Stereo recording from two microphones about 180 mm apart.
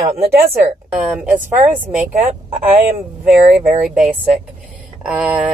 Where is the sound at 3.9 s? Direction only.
5° right (ahead or behind).